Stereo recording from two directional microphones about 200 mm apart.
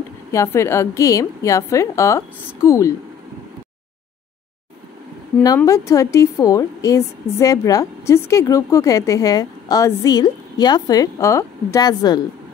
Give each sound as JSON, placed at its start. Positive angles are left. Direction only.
{"t": 0.3, "sound": "a woman's voice", "side_deg": 15}
{"t": 5.6, "sound": "a woman's voice", "side_deg": 15}